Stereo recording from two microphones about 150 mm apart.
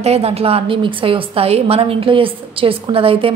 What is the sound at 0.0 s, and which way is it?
A woman's voice, 45° right (ahead or behind).